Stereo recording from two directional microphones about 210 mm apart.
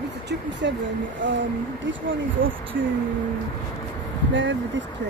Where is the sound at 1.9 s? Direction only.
60° right (ahead or behind).